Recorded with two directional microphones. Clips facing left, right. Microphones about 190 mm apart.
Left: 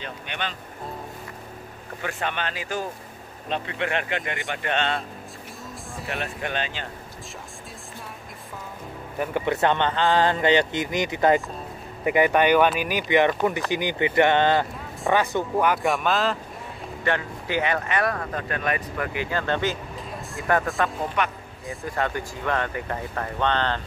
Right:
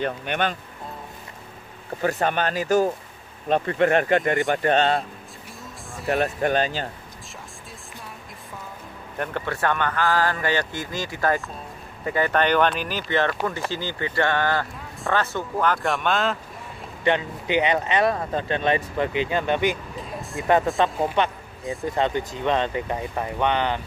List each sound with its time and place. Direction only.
0.0 s speech: 50° right (ahead or behind)
2.0 s speech: 40° right (ahead or behind)
6.0 s speech: 40° right (ahead or behind)
9.2 s speech: 15° left (ahead or behind)
17.0 s speech: 20° right (ahead or behind)